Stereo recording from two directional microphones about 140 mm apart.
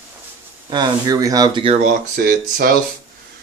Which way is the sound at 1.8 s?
85° right.